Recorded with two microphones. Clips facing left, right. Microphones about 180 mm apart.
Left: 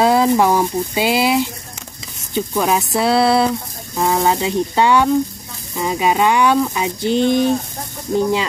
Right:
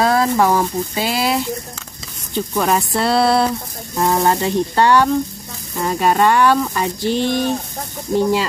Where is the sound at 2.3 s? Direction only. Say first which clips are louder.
Even; centre (ahead or behind).